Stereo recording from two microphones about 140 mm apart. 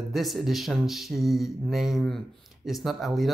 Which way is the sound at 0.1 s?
Centre (ahead or behind).